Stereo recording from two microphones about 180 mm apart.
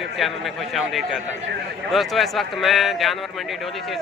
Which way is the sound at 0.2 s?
Centre (ahead or behind).